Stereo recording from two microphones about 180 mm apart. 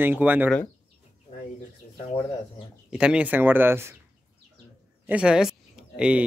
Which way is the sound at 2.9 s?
5° right (ahead or behind).